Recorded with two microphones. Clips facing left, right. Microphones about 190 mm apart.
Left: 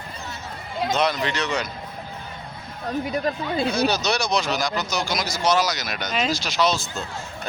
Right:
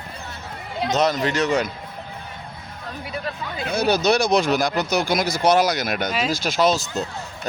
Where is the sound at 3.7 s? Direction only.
55° right (ahead or behind).